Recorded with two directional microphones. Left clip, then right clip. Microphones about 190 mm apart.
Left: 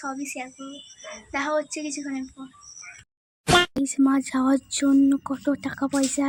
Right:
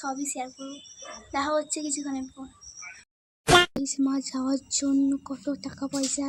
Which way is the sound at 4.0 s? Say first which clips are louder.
Left 7 dB; 10° left (ahead or behind).